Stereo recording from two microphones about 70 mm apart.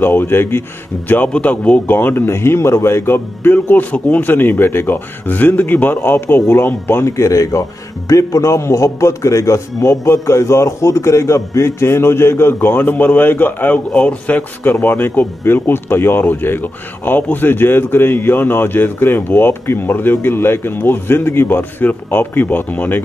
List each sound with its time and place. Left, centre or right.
0.0 s a man's voice: left
7.1 s a man's voice: left